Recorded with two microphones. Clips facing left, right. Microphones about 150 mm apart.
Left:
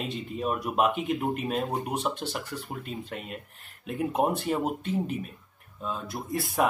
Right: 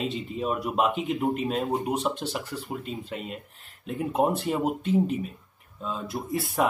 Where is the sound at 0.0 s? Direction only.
Centre (ahead or behind).